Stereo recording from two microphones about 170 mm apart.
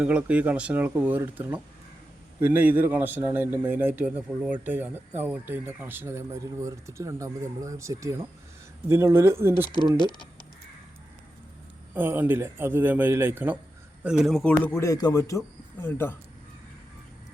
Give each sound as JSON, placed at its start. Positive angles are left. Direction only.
{"t": 0.0, "sound": "a man's voice", "side_deg": -5}
{"t": 10.0, "sound": "speech", "side_deg": 25}
{"t": 11.9, "sound": "a man's voice", "side_deg": -10}